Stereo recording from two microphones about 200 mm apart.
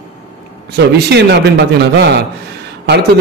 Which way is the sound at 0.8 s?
60° right (ahead or behind).